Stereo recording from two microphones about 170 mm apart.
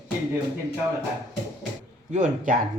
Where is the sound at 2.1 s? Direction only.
50° right (ahead or behind).